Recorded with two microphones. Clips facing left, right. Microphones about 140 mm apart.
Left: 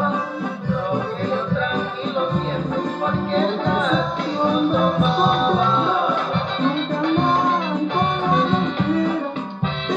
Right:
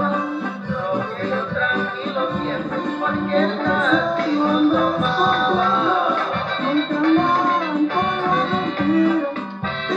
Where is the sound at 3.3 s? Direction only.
15° left (ahead or behind).